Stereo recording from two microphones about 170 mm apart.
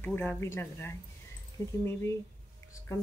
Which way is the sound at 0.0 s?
10° left (ahead or behind).